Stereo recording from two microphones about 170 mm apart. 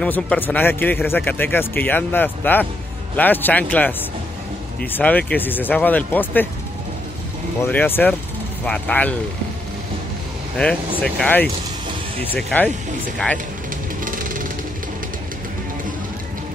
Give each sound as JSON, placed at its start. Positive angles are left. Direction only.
{"t": 0.0, "sound": "speech", "side_deg": 10}
{"t": 7.6, "sound": "speech", "side_deg": 10}
{"t": 10.6, "sound": "speech", "side_deg": 5}
{"t": 14.0, "sound": "music", "side_deg": -55}